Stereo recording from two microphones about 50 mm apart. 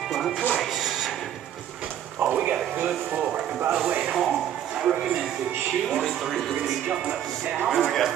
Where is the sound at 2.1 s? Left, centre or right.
Right.